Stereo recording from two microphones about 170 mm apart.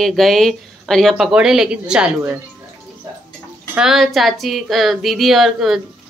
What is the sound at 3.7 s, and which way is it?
Speech, 5° right (ahead or behind).